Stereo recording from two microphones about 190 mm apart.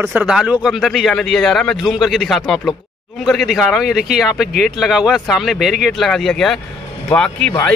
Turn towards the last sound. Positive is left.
turn(degrees=5)  # may be behind; listen again after turning